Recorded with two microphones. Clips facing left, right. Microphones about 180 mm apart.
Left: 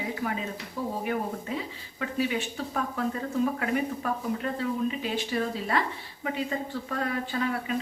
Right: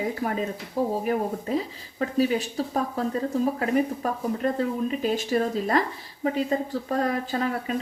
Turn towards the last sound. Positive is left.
turn(degrees=-40)  # may be behind; listen again after turning